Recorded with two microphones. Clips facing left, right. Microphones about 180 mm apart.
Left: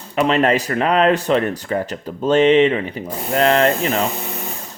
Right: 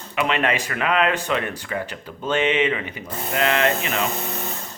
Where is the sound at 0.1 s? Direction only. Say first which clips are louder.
Left 6 dB; 35° left (ahead or behind).